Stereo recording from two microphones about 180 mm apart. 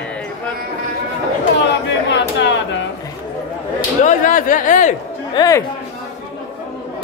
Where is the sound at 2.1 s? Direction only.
80° left.